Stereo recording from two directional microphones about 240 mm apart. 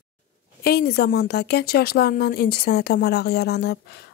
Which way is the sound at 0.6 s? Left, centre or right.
Left.